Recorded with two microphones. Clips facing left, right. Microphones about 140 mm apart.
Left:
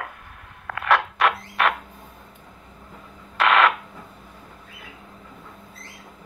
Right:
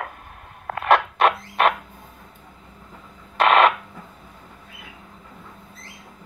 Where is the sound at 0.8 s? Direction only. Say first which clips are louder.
Right 3 dB; 25° right (ahead or behind).